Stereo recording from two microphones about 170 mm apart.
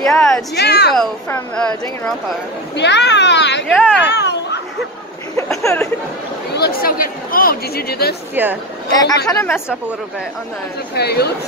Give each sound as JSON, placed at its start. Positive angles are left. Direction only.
{"t": 0.0, "sound": "a woman's voice", "side_deg": 5}
{"t": 0.6, "sound": "a woman's voice", "side_deg": 70}
{"t": 1.3, "sound": "speech", "side_deg": 5}
{"t": 2.7, "sound": "a child's voice", "side_deg": 90}
{"t": 3.7, "sound": "a woman's voice", "side_deg": 0}
{"t": 4.1, "sound": "a sound", "side_deg": 85}
{"t": 5.5, "sound": "speech", "side_deg": 15}
{"t": 6.5, "sound": "speech", "side_deg": 65}
{"t": 8.9, "sound": "speech", "side_deg": 20}
{"t": 11.0, "sound": "a woman's voice", "side_deg": 70}